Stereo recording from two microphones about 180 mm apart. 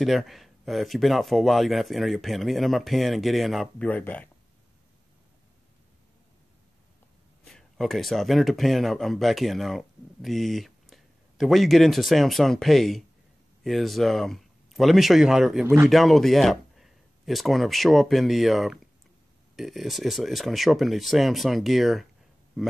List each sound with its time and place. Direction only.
0.0 s a man's voice: centre (ahead or behind)
7.4 s a man's voice: centre (ahead or behind)
15.6 s a man's voice: 15° right (ahead or behind)
15.9 s a man's voice: centre (ahead or behind)